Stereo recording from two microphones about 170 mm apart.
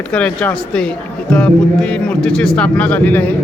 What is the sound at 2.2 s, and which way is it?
Speech, 5° left (ahead or behind).